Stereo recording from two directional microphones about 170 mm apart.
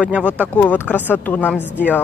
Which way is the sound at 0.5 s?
10° left (ahead or behind).